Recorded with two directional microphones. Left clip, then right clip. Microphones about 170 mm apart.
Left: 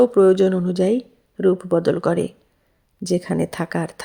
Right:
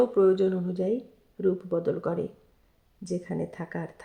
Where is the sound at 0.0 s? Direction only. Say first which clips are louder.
Left 8 dB; 45° left (ahead or behind).